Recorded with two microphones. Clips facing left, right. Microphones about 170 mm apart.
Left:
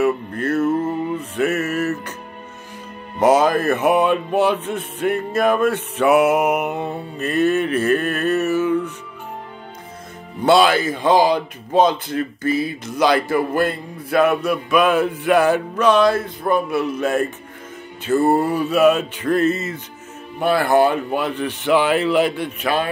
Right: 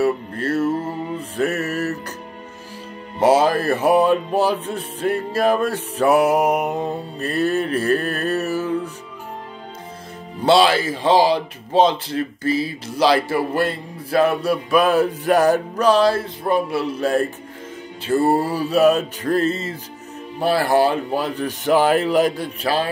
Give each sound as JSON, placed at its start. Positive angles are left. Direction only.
{"t": 0.0, "sound": "speech", "side_deg": -30}
{"t": 3.2, "sound": "speech", "side_deg": -30}
{"t": 10.4, "sound": "speech", "side_deg": -30}